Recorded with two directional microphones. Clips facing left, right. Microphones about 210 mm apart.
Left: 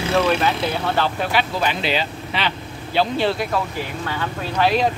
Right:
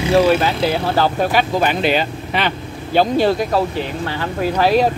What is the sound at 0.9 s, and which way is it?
Speech, 45° right (ahead or behind).